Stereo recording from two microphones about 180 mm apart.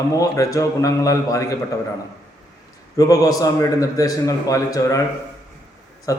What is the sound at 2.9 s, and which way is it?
A man's voice, 20° left (ahead or behind).